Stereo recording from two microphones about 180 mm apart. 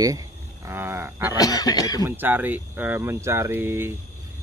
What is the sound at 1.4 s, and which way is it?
Speech, 20° left (ahead or behind).